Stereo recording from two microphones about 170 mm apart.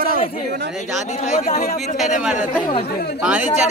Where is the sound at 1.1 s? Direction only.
45° left (ahead or behind).